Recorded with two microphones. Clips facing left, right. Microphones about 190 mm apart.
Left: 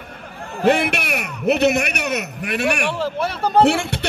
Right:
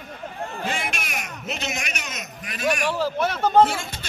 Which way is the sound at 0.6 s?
65° left (ahead or behind).